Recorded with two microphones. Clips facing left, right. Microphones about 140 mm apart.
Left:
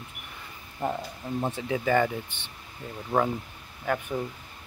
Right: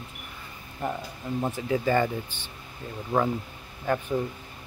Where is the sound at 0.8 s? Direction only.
20° left (ahead or behind).